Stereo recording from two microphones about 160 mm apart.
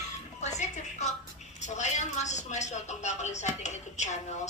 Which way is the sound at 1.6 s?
45° left (ahead or behind).